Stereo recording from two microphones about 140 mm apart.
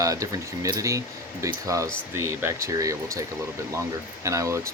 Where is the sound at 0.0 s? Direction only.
25° right (ahead or behind).